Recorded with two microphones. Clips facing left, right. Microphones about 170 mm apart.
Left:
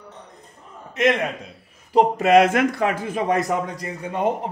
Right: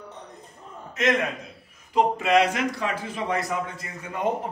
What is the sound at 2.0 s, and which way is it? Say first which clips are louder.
Speech: left 5 dB; 40° left (ahead or behind).